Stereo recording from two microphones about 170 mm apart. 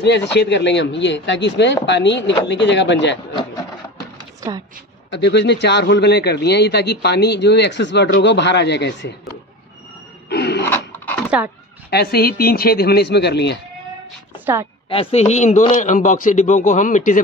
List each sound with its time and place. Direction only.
0.0 s a man's voice: 90° left
4.4 s speech: 20° right (ahead or behind)
5.1 s a man's voice: 90° left
10.3 s a sound: 75° left (ahead or behind)
10.6 s a sound: 10° left (ahead or behind)
11.2 s speech: 10° right (ahead or behind)
11.9 s speech: 70° left (ahead or behind)
14.4 s a woman's voice: 15° right (ahead or behind)
14.9 s a man's voice: 35° left (ahead or behind)